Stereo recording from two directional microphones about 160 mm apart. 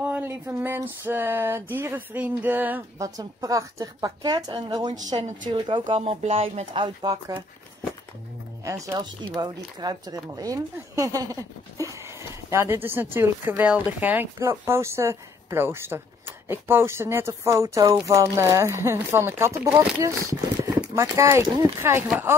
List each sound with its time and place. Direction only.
0.0 s speech: 10° right (ahead or behind)
3.2 s a woman's voice: 20° right (ahead or behind)
5.9 s speech: 35° right (ahead or behind)
8.6 s speech: 20° right (ahead or behind)